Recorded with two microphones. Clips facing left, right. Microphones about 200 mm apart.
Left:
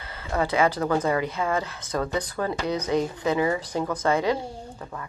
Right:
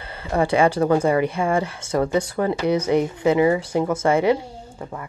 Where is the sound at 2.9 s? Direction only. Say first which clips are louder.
Right 5 dB; 15° right (ahead or behind).